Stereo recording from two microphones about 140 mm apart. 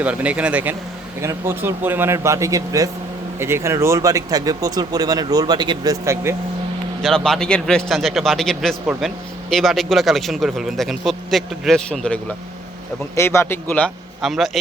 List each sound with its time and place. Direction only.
0.0 s speech: 10° right (ahead or behind)
7.0 s a man's voice: 5° left (ahead or behind)
13.1 s a man's voice: 20° left (ahead or behind)
14.2 s a man's voice: centre (ahead or behind)